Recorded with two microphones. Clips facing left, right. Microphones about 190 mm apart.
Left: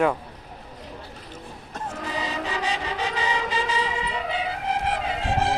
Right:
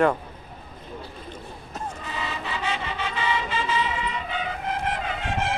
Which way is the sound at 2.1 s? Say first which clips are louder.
Left 4 dB; 35° left (ahead or behind).